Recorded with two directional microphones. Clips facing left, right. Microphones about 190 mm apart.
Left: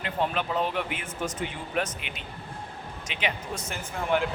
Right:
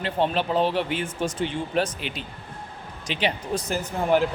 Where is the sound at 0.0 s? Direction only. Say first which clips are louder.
Right 4 dB; 30° right (ahead or behind).